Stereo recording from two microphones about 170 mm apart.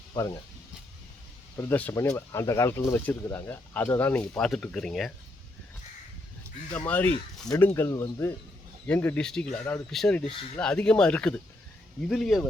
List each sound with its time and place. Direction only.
0.1 s speech: 25° left (ahead or behind)
1.5 s speech: 15° left (ahead or behind)
6.7 s speech: 10° left (ahead or behind)